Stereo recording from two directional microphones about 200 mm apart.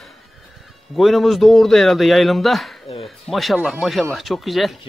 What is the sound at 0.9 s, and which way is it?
A man's voice, centre (ahead or behind).